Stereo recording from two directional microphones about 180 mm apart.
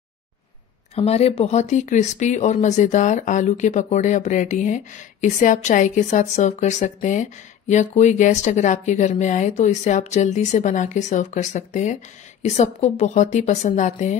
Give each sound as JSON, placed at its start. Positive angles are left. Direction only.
{"t": 0.9, "sound": "speech", "side_deg": 35}